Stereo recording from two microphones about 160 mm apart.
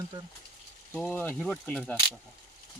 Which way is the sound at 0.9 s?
10° left (ahead or behind).